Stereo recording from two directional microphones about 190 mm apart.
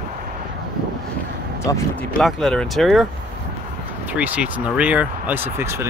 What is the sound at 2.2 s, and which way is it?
Speech, centre (ahead or behind).